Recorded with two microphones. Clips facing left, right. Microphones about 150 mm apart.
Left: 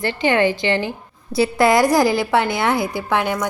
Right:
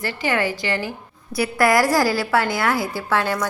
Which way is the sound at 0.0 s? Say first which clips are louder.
Left 5 dB; 25° left (ahead or behind).